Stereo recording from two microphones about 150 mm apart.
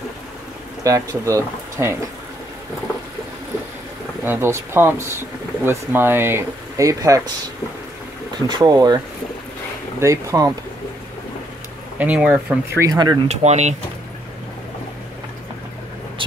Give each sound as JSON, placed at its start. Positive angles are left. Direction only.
{"t": 0.8, "sound": "speech", "side_deg": -20}
{"t": 4.2, "sound": "speech", "side_deg": -15}
{"t": 8.5, "sound": "speech", "side_deg": -30}
{"t": 12.0, "sound": "speech", "side_deg": -10}
{"t": 12.6, "sound": "speech", "side_deg": -20}
{"t": 13.3, "sound": "speech", "side_deg": -50}